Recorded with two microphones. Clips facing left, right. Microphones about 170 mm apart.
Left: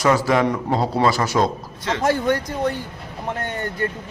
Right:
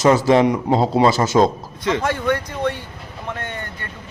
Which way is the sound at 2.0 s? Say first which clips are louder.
Left 1 dB; 40° left (ahead or behind).